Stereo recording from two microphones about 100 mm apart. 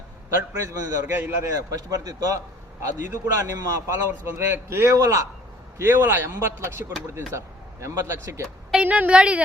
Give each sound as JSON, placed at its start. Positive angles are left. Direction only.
{"t": 0.5, "sound": "a man's voice", "side_deg": -30}
{"t": 5.7, "sound": "a man's voice", "side_deg": -20}
{"t": 8.7, "sound": "a woman's voice", "side_deg": -15}